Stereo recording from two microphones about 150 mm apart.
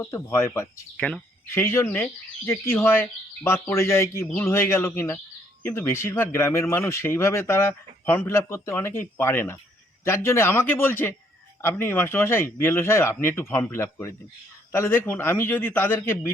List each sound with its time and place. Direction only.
0.0 s speech: 15° left (ahead or behind)